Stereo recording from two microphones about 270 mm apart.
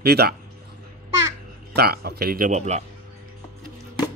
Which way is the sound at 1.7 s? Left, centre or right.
Right.